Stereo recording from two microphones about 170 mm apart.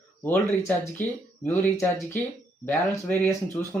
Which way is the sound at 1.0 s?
10° left (ahead or behind).